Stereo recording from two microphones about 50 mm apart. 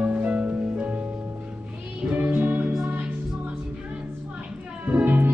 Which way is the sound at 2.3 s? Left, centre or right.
Right.